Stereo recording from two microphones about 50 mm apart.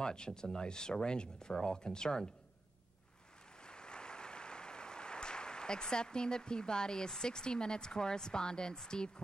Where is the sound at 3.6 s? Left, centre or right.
Centre.